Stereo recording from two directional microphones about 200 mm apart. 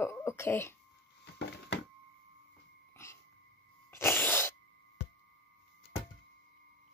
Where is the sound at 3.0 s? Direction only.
15° left (ahead or behind).